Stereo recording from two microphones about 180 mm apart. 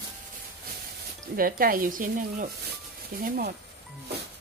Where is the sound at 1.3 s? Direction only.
50° right (ahead or behind).